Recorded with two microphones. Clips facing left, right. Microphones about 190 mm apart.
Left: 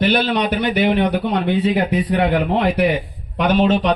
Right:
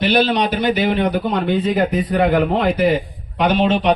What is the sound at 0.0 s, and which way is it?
A man's voice, 55° left (ahead or behind).